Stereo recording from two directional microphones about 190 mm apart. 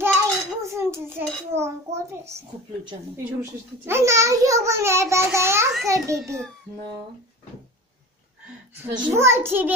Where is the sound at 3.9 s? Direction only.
15° right (ahead or behind).